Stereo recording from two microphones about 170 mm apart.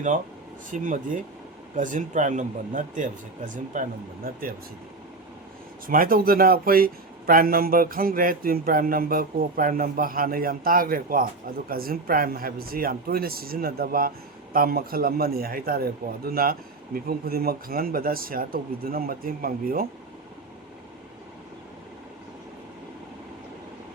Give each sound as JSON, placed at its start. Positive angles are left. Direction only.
{"t": 0.7, "sound": "speech", "side_deg": -50}
{"t": 5.9, "sound": "a man's voice", "side_deg": -55}